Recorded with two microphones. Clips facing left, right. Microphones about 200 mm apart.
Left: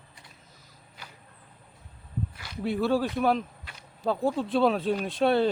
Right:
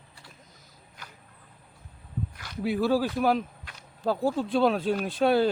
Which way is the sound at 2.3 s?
10° left (ahead or behind).